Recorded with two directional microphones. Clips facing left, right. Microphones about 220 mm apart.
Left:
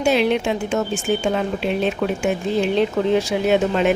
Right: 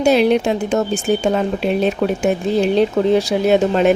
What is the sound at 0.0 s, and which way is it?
Speech, 40° right (ahead or behind).